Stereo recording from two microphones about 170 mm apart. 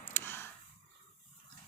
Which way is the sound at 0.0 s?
15° left (ahead or behind).